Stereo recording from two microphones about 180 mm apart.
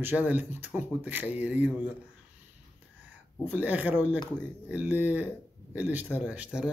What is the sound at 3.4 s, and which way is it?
Speech, 10° right (ahead or behind).